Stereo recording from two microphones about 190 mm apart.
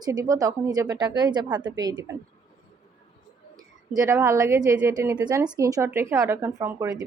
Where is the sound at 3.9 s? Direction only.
15° right (ahead or behind).